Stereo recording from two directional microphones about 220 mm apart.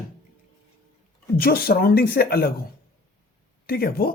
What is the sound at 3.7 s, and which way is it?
Speech, 45° left (ahead or behind).